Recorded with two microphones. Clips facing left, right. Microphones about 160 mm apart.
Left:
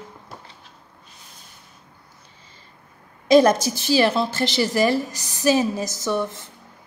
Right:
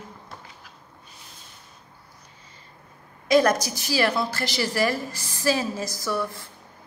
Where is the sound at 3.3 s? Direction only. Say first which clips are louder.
Left 5 dB; 25° left (ahead or behind).